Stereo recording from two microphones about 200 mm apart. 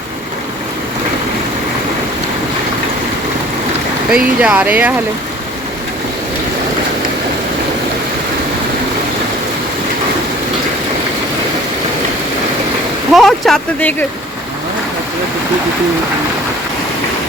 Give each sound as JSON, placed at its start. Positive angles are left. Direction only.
{"t": 4.1, "sound": "speech", "side_deg": -5}
{"t": 13.1, "sound": "speech", "side_deg": 0}